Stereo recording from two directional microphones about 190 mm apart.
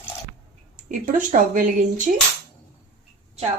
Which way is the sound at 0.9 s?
45° right (ahead or behind).